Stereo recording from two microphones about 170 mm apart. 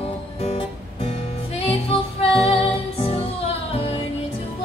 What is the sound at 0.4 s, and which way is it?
Music, 40° left (ahead or behind).